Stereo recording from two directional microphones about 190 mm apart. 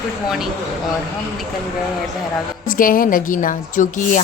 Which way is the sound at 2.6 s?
45° left (ahead or behind).